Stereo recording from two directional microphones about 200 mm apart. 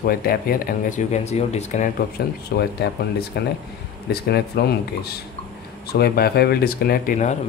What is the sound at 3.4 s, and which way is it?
Speech, 55° left (ahead or behind).